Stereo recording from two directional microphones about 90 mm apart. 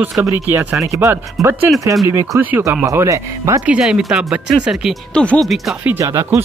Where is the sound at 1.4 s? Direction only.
Centre (ahead or behind).